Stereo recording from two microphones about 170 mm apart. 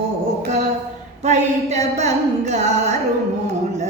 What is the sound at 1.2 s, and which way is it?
Music, 40° right (ahead or behind).